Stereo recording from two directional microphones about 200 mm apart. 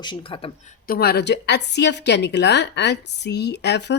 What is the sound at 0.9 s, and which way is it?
Speech, 55° left (ahead or behind).